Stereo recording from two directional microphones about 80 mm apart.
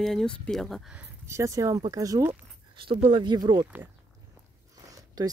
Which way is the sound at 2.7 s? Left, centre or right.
Right.